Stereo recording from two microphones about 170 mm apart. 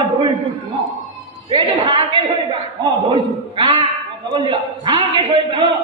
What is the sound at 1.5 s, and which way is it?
A man's voice, 30° right (ahead or behind).